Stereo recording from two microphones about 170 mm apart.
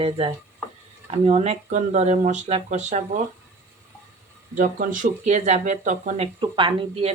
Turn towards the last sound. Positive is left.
turn(degrees=-35)  # may be behind; listen again after turning